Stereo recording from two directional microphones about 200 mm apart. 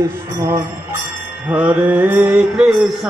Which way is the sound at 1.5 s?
5° right (ahead or behind).